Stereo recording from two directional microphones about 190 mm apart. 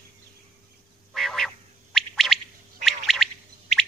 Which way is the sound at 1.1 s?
Centre (ahead or behind).